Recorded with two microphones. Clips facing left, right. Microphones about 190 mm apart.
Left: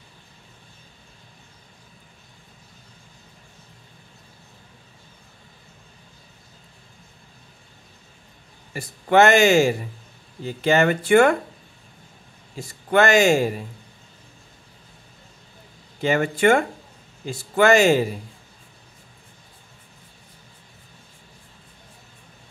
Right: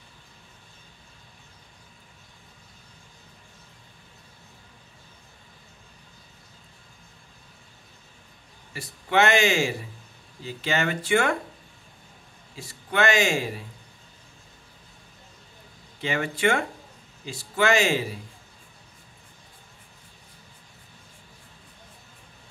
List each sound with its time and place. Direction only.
8.7 s a man's voice: 45° left (ahead or behind)
12.5 s a man's voice: 45° left (ahead or behind)
16.0 s a man's voice: 45° left (ahead or behind)